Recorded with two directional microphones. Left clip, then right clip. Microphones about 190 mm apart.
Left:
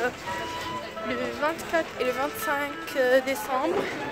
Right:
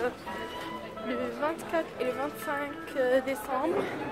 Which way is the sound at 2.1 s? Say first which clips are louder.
Left 5 dB; 5° left (ahead or behind).